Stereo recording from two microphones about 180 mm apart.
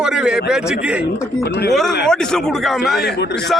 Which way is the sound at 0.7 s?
5° right (ahead or behind).